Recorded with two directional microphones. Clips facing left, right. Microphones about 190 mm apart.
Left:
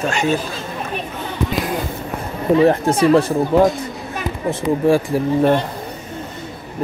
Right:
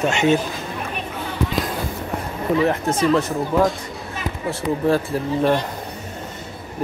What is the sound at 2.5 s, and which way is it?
Speech, 30° left (ahead or behind).